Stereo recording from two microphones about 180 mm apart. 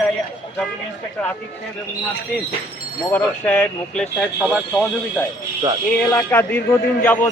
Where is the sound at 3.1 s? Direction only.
10° left (ahead or behind).